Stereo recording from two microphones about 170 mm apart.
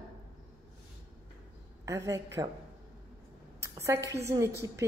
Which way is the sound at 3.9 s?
15° right (ahead or behind).